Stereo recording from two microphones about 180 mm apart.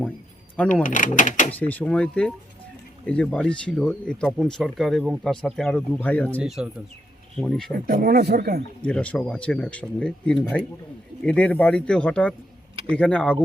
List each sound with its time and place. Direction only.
0.7 s speech: 45° left (ahead or behind)
1.5 s speech: 10° left (ahead or behind)
6.4 s speech: 5° right (ahead or behind)
7.7 s speech: 55° right (ahead or behind)
8.8 s speech: 5° left (ahead or behind)